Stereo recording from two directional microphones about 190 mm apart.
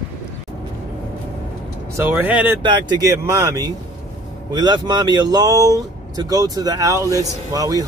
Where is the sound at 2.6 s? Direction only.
25° right (ahead or behind).